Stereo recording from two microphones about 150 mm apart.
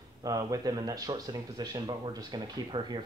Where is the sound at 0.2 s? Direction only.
25° right (ahead or behind).